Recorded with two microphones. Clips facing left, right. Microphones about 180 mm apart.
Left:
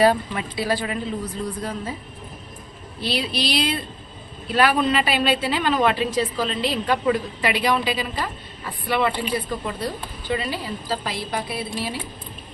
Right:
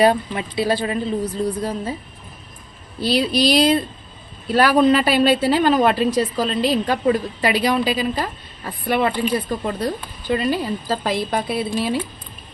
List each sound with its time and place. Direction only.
0.0 s speech: 25° right (ahead or behind)
3.0 s a woman's voice: 40° right (ahead or behind)